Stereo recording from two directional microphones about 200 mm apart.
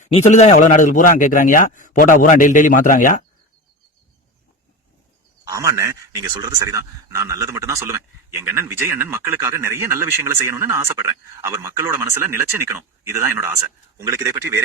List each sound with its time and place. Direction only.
0.0 s speech: 35° left (ahead or behind)
5.5 s speech: 15° right (ahead or behind)